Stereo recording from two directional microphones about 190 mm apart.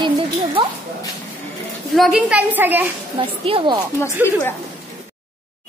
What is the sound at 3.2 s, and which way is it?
Speech, 30° right (ahead or behind).